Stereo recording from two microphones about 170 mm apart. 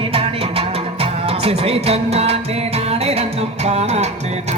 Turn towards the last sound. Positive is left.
turn(degrees=-40)  # may be behind; listen again after turning